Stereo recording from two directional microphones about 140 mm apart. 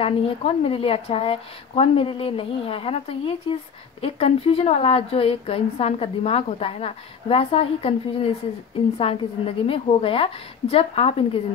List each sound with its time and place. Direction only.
0.0 s a woman's voice: 45° left (ahead or behind)